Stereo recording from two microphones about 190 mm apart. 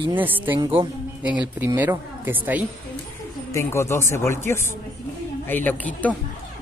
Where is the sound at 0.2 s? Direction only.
10° right (ahead or behind).